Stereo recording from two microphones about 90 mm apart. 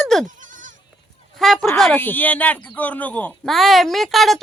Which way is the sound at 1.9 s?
20° left (ahead or behind).